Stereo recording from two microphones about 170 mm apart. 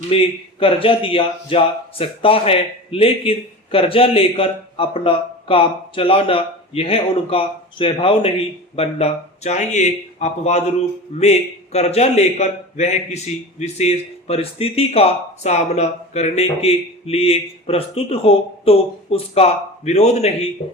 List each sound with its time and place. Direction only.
0.1 s speech: 35° left (ahead or behind)